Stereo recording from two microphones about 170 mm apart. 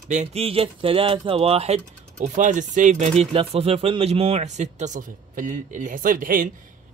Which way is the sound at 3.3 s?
35° right (ahead or behind).